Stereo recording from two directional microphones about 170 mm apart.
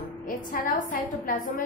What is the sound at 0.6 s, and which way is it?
Speech, 55° left (ahead or behind).